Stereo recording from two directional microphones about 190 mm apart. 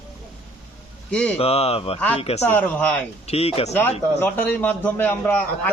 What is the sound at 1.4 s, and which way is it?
Speech, 30° left (ahead or behind).